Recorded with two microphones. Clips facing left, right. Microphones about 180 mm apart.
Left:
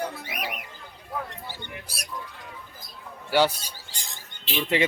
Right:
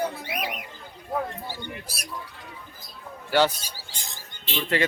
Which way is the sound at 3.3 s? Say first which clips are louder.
Even; 10° left (ahead or behind).